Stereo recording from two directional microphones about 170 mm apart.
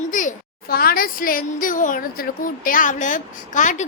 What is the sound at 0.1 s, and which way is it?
A child's voice, 50° left (ahead or behind).